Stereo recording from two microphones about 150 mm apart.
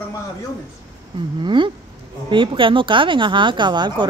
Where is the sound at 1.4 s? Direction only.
30° right (ahead or behind).